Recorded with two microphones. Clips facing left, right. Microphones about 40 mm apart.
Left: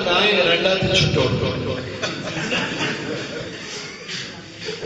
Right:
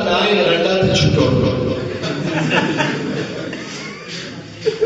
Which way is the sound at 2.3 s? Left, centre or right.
Right.